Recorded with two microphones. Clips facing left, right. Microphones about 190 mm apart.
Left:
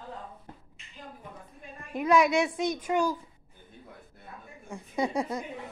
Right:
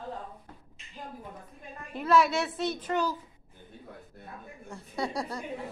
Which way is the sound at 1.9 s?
15° left (ahead or behind).